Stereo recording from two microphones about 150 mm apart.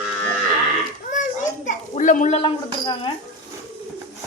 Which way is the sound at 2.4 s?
30° left (ahead or behind).